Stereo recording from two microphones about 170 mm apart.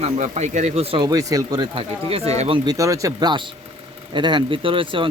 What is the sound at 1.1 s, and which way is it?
Speech, 20° right (ahead or behind).